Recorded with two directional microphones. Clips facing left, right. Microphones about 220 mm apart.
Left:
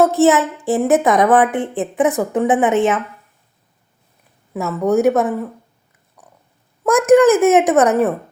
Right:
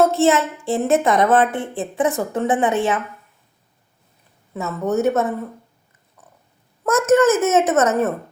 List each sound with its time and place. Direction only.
0.0 s a woman's voice: 15° left (ahead or behind)
4.5 s a woman's voice: 10° left (ahead or behind)
6.8 s a woman's voice: 15° left (ahead or behind)